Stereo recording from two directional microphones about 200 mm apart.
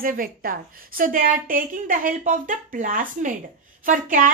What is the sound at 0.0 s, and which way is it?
A woman's voice, 45° right (ahead or behind).